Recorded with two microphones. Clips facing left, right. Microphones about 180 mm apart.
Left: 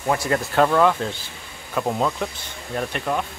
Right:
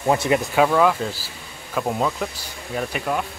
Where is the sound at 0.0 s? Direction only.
20° right (ahead or behind).